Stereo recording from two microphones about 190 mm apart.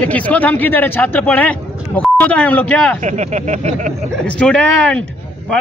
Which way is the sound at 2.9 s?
40° right (ahead or behind).